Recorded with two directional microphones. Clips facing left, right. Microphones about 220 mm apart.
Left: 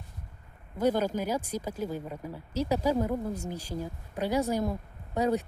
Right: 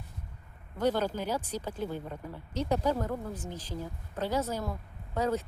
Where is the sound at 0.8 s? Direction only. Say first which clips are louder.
Left 2 dB; 10° left (ahead or behind).